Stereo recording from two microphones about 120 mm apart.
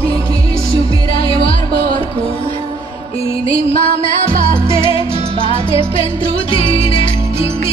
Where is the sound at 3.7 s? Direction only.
55° left (ahead or behind).